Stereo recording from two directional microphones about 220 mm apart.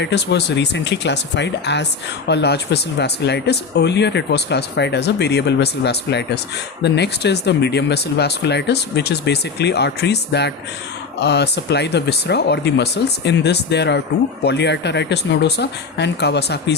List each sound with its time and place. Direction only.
0.0 s speech: 50° left (ahead or behind)